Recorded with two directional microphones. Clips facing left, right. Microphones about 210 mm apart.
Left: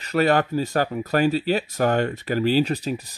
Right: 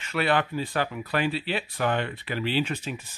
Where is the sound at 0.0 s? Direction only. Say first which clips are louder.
Left 6 dB; 40° left (ahead or behind).